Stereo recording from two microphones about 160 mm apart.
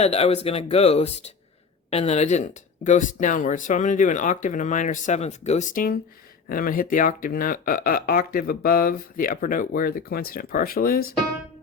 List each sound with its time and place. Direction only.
0.0 s speech: 40° left (ahead or behind); by 11.1 s 70° left (ahead or behind)